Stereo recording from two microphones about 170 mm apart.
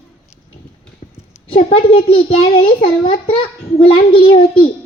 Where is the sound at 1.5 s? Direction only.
35° left (ahead or behind).